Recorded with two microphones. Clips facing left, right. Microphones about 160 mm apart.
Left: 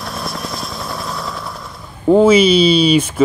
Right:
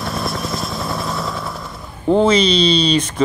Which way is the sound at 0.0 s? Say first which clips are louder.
Right 2 dB; centre (ahead or behind).